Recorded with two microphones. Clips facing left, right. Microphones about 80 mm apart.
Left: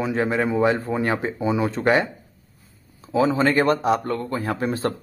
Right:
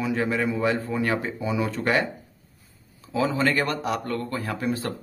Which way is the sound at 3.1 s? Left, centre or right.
Left.